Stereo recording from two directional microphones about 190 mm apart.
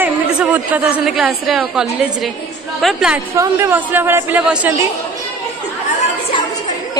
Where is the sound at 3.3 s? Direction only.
15° right (ahead or behind).